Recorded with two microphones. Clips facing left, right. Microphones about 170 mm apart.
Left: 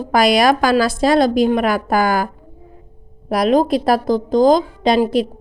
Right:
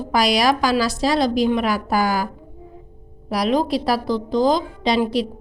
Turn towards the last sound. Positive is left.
turn(degrees=50)  # may be behind; listen again after turning